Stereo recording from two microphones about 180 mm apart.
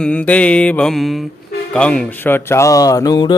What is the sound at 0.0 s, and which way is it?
Speech, 5° left (ahead or behind).